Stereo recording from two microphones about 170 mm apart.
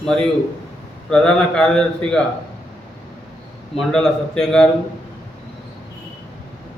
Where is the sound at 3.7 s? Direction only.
5° left (ahead or behind).